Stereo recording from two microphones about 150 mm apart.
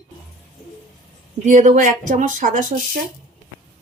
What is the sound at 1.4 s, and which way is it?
Speech, 55° right (ahead or behind).